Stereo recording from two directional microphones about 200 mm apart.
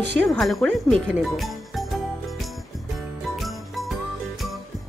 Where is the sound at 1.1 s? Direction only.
Centre (ahead or behind).